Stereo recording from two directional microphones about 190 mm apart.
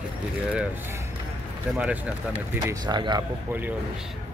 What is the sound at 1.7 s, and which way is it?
Speech, 5° right (ahead or behind).